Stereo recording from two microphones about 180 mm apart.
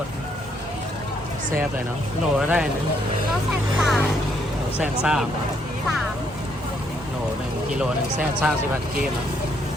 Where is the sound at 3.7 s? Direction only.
Centre (ahead or behind).